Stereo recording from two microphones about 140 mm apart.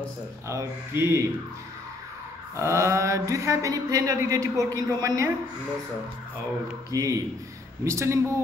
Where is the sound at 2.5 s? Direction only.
20° right (ahead or behind).